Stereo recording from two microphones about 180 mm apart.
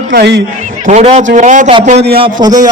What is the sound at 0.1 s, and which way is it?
Speech, 65° right (ahead or behind).